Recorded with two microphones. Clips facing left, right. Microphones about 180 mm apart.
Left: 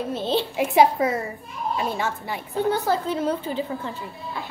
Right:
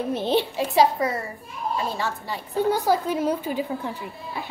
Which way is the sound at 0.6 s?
15° left (ahead or behind).